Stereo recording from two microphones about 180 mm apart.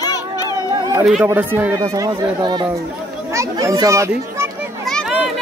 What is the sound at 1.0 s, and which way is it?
Speech, 5° right (ahead or behind).